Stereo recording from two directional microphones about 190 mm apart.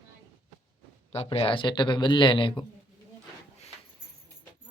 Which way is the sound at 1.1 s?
30° left (ahead or behind).